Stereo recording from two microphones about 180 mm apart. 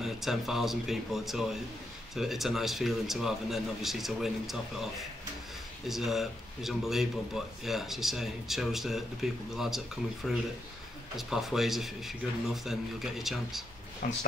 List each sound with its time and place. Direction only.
0.0 s speech: centre (ahead or behind)
5.9 s speech: centre (ahead or behind)
14.0 s speech: 50° left (ahead or behind)